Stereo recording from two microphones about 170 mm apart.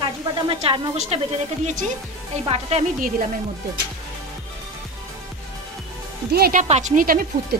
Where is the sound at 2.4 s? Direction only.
35° right (ahead or behind).